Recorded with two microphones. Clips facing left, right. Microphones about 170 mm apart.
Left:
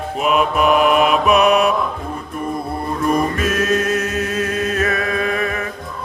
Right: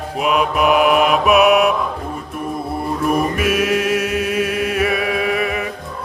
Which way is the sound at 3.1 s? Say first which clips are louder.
Even; 10° right (ahead or behind).